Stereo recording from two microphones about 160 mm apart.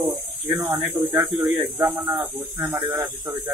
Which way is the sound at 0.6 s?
15° right (ahead or behind).